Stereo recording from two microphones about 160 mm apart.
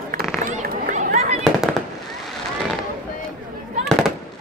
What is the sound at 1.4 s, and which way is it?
Fireworks, centre (ahead or behind).